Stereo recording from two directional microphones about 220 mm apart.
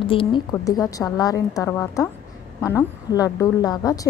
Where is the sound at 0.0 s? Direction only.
25° left (ahead or behind).